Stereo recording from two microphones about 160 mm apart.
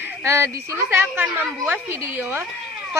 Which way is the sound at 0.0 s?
15° right (ahead or behind).